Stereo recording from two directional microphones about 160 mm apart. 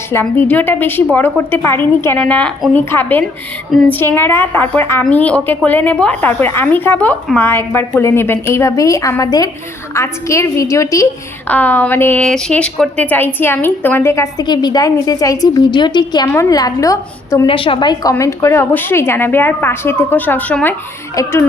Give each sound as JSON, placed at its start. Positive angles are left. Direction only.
{"t": 0.1, "sound": "a woman's voice", "side_deg": 15}
{"t": 17.4, "sound": "a woman's voice", "side_deg": 35}
{"t": 21.2, "sound": "a woman's voice", "side_deg": 20}